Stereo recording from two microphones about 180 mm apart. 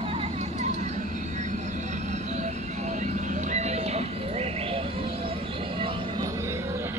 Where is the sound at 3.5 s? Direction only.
40° right (ahead or behind).